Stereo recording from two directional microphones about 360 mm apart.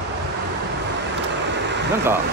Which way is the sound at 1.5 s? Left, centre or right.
Right.